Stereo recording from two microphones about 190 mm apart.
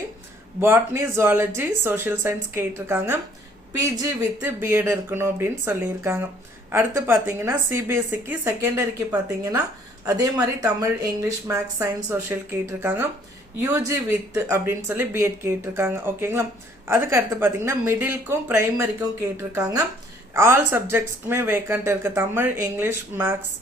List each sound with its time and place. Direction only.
0.6 s speech: 15° right (ahead or behind)